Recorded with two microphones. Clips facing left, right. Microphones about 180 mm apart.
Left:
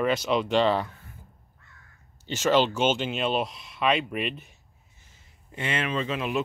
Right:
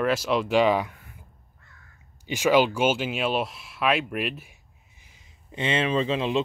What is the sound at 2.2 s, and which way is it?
Speech, 10° right (ahead or behind).